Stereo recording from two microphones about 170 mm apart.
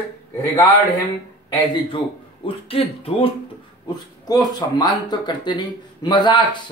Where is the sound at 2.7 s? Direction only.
35° left (ahead or behind).